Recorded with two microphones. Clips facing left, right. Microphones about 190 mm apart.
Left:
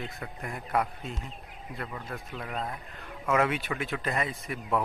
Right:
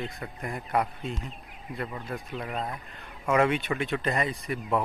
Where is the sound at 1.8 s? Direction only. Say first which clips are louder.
Right 3 dB; 15° right (ahead or behind).